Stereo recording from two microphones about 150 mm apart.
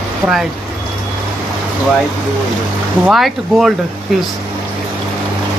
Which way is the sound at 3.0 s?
Centre (ahead or behind).